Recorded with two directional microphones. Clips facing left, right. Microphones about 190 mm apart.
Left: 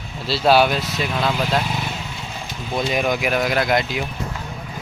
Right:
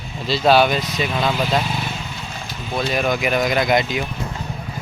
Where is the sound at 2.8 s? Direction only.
15° left (ahead or behind).